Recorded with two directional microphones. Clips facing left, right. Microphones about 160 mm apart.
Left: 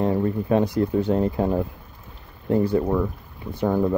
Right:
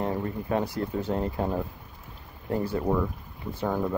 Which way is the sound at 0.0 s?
20° left (ahead or behind).